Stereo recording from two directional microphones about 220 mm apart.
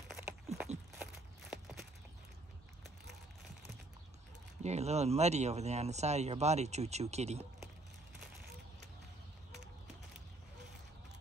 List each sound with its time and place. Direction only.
0.1 s a sound: 5° right (ahead or behind)
0.9 s walk: 5° right (ahead or behind)
4.6 s speech: 30° right (ahead or behind)